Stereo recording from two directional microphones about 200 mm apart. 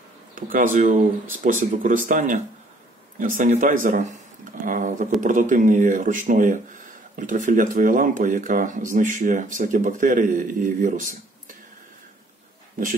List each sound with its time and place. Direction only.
0.3 s speech: 45° right (ahead or behind)